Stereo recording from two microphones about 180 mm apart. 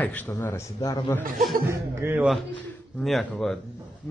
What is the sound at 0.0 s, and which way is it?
Speech, 10° left (ahead or behind).